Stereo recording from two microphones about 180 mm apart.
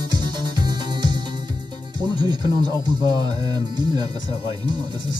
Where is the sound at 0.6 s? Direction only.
25° right (ahead or behind).